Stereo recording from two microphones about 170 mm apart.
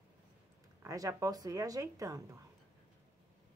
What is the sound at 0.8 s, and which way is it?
Speech, 20° right (ahead or behind).